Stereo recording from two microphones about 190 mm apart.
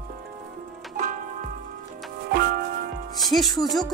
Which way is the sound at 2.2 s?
50° right (ahead or behind).